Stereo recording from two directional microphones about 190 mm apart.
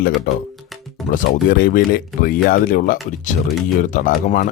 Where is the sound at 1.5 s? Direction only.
50° left (ahead or behind).